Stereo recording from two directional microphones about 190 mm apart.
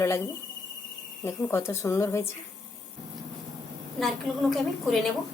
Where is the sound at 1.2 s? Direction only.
15° left (ahead or behind).